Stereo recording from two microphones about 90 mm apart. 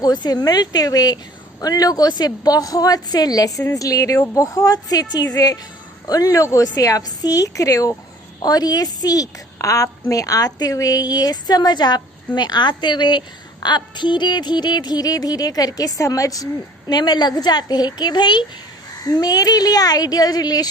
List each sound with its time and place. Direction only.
0.0 s a woman's voice: 50° left (ahead or behind)
16.9 s a woman's voice: 50° left (ahead or behind)